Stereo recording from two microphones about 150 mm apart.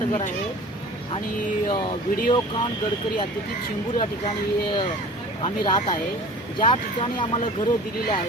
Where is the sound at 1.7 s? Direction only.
35° left (ahead or behind).